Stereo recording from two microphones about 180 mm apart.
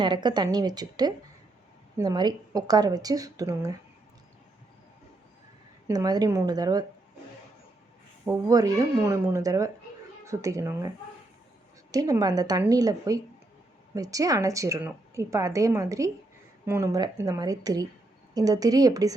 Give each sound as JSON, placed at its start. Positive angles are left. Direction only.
{"t": 0.0, "sound": "a woman's voice", "side_deg": -25}
{"t": 5.9, "sound": "a woman's voice", "side_deg": -20}
{"t": 8.2, "sound": "a woman's voice", "side_deg": -15}